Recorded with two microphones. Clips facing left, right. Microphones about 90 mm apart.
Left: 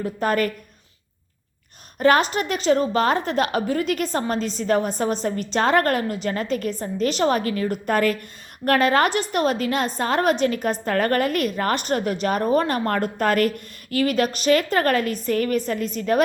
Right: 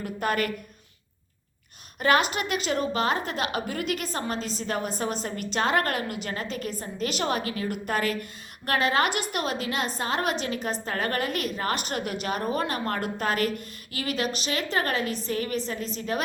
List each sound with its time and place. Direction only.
0.0 s a woman's voice: 35° left (ahead or behind)
2.0 s a woman's voice: 40° left (ahead or behind)